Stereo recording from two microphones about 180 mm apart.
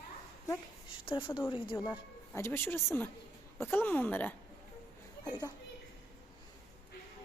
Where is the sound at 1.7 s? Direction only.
15° left (ahead or behind).